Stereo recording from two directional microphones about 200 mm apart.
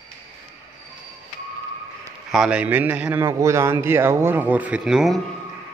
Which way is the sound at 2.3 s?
5° right (ahead or behind).